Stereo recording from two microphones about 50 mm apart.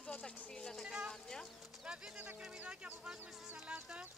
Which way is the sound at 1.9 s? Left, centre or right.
Centre.